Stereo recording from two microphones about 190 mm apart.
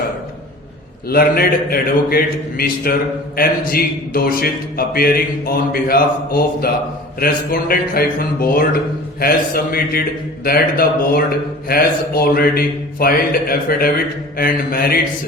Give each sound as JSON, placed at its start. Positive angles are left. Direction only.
{"t": 1.1, "sound": "a man's voice", "side_deg": 50}